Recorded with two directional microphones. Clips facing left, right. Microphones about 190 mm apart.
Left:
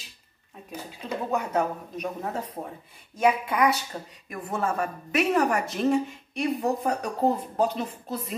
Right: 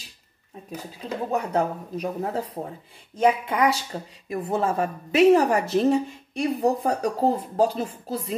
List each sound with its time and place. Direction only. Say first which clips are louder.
1.3 s a woman's voice: right 2 dB; 30° right (ahead or behind)